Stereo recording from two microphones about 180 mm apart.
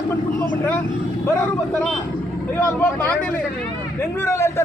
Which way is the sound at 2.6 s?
10° left (ahead or behind).